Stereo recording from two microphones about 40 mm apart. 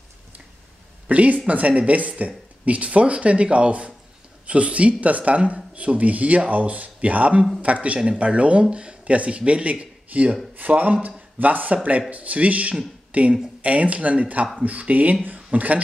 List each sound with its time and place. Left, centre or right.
1.0 s speech: right